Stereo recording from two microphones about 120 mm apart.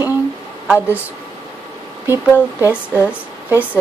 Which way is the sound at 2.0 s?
20° right (ahead or behind).